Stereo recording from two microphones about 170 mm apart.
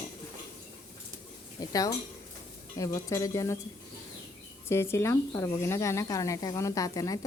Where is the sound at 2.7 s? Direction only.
20° left (ahead or behind).